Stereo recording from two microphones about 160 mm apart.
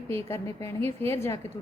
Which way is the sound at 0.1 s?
15° left (ahead or behind).